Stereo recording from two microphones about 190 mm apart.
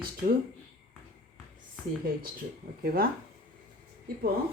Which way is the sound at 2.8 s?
50° right (ahead or behind).